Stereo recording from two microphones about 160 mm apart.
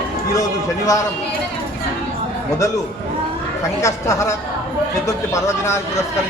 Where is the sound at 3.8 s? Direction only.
20° left (ahead or behind).